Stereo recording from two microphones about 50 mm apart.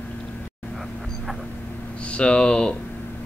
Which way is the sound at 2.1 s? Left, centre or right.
Left.